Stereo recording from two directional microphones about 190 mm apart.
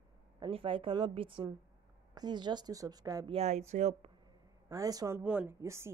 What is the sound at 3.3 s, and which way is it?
Speech, 35° right (ahead or behind).